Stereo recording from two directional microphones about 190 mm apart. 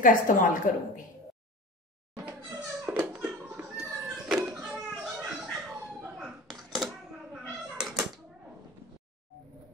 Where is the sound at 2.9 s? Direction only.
5° right (ahead or behind).